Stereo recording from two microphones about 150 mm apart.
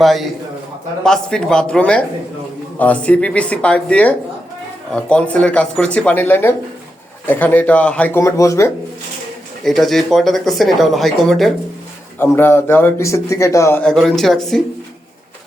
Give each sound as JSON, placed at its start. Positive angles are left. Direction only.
{"t": 0.0, "sound": "speech", "side_deg": 0}
{"t": 9.6, "sound": "speech", "side_deg": 0}
{"t": 12.2, "sound": "speech", "side_deg": 15}
{"t": 13.8, "sound": "speech", "side_deg": 0}